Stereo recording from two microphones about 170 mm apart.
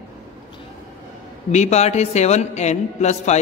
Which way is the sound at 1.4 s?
40° left (ahead or behind).